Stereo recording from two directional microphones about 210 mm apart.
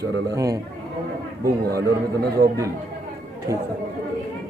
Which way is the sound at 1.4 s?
45° right (ahead or behind).